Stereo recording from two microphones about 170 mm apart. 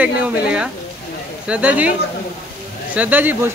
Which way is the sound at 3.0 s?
10° right (ahead or behind).